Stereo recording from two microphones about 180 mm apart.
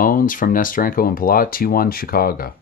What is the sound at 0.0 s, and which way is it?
Speech, 50° left (ahead or behind).